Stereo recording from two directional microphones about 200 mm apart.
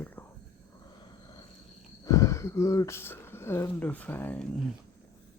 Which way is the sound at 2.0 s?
15° left (ahead or behind).